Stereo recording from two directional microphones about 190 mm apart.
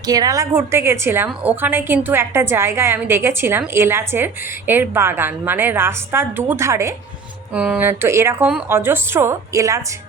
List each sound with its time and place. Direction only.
0.1 s a woman's voice: 20° right (ahead or behind)